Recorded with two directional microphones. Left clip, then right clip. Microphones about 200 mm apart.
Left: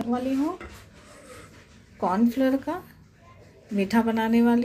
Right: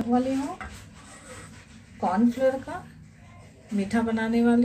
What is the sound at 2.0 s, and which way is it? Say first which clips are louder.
A woman's voice: even; 45° left (ahead or behind).